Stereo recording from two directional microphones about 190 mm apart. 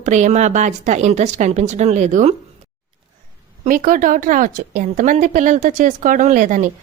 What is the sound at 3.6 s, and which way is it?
A woman's voice, 45° right (ahead or behind).